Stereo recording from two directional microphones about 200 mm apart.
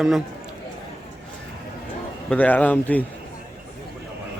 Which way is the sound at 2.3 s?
5° left (ahead or behind).